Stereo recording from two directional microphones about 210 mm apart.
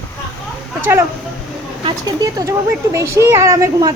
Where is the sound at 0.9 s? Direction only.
10° right (ahead or behind).